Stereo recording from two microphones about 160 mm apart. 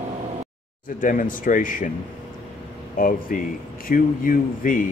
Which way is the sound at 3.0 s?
60° left (ahead or behind).